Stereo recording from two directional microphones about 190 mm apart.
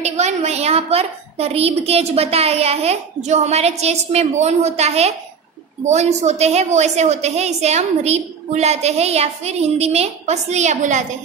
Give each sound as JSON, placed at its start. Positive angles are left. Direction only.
{"t": 0.0, "sound": "a woman's voice", "side_deg": -35}